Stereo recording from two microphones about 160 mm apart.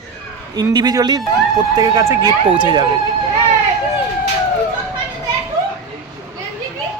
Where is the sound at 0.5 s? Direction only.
25° right (ahead or behind).